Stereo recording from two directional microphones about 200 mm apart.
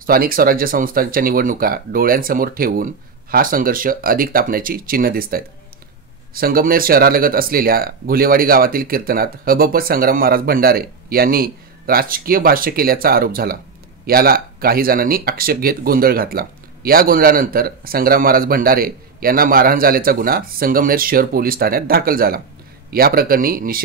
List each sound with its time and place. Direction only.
0.0 s speech: 45° right (ahead or behind)